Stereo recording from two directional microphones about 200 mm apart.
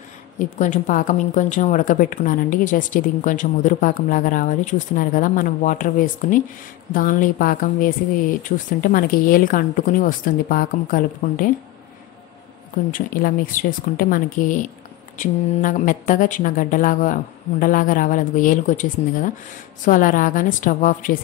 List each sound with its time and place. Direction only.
0.4 s a woman's voice: 40° left (ahead or behind)
12.9 s a woman's voice: 45° left (ahead or behind)